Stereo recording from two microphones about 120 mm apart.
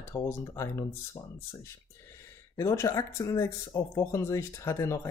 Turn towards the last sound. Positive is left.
turn(degrees=25)  # may be behind; listen again after turning